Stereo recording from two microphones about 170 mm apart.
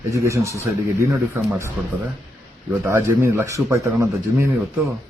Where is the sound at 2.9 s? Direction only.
15° right (ahead or behind).